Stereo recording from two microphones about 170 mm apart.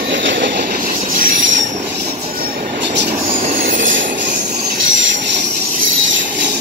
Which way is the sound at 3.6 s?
90° right.